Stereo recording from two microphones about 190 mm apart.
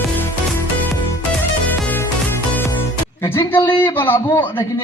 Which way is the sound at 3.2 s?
10° left (ahead or behind).